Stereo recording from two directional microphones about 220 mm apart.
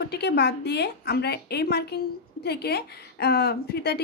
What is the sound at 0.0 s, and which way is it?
A woman's voice, 50° left (ahead or behind).